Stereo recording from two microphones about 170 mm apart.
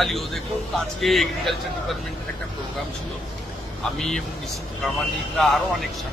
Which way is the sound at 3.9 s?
Centre (ahead or behind).